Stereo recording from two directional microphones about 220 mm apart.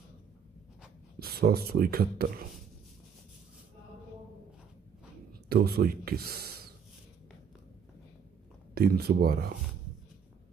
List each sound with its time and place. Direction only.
1.2 s speech: 45° right (ahead or behind)
5.5 s speech: 45° right (ahead or behind)
8.7 s speech: 45° right (ahead or behind)